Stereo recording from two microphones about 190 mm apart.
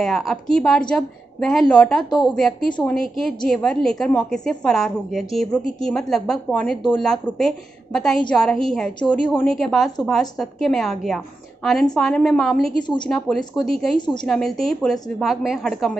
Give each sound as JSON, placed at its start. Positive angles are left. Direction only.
{"t": 0.0, "sound": "a woman's voice", "side_deg": 0}
{"t": 12.8, "sound": "a woman's voice", "side_deg": 25}
{"t": 13.1, "sound": "a woman's voice", "side_deg": 0}
{"t": 13.9, "sound": "a woman's voice", "side_deg": 25}
{"t": 14.2, "sound": "a woman's voice", "side_deg": 0}